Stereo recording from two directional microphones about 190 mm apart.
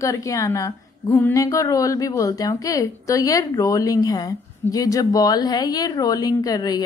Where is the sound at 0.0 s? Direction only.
15° left (ahead or behind).